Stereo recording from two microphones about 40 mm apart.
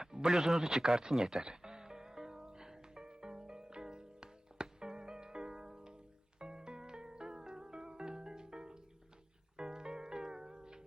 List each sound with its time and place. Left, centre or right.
0.0 s a sound: centre
0.3 s speech: centre
0.9 s music: centre